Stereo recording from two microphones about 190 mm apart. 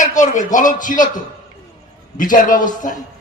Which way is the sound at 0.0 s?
40° left (ahead or behind).